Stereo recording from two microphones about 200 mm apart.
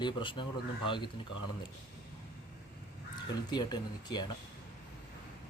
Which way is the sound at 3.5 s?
20° left (ahead or behind).